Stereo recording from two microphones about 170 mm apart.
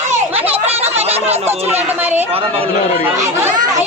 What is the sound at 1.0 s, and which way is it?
Speech, 35° right (ahead or behind).